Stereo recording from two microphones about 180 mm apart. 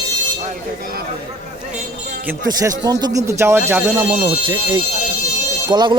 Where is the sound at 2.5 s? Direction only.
20° right (ahead or behind).